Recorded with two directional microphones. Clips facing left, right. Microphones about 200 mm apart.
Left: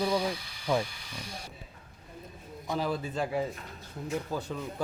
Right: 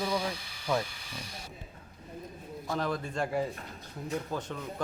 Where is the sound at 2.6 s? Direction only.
5° left (ahead or behind).